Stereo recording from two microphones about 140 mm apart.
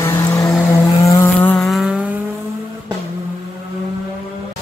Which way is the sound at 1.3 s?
10° left (ahead or behind).